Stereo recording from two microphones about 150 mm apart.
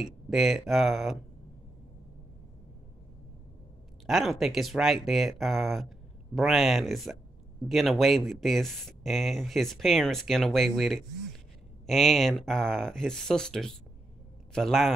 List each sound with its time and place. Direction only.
0.0 s speech: centre (ahead or behind)
4.0 s a man's voice: centre (ahead or behind)